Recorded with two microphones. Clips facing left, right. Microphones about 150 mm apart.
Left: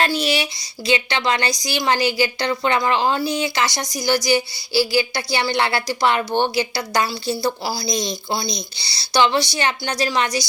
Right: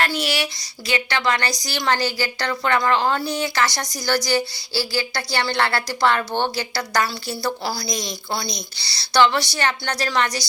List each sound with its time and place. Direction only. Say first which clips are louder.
0.2 s speech: left 3 dB; 20° left (ahead or behind)
7.3 s speech: left 2 dB; 10° left (ahead or behind)
7.9 s a woman's voice: left 4 dB; 25° left (ahead or behind)